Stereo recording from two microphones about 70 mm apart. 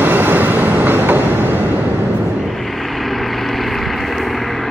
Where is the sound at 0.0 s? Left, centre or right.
Right.